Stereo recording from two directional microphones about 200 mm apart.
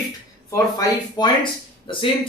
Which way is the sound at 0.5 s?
20° left (ahead or behind).